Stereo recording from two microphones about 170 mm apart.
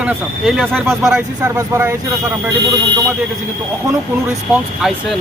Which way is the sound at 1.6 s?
15° right (ahead or behind).